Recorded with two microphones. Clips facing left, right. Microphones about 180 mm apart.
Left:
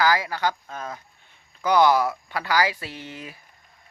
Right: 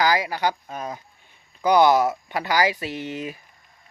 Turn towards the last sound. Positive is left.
turn(degrees=-20)  # may be behind; listen again after turning